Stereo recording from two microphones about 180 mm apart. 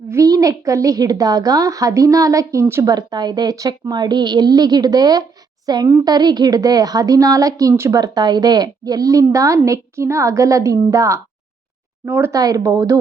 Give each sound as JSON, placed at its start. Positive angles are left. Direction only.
{"t": 0.1, "sound": "speech", "side_deg": -20}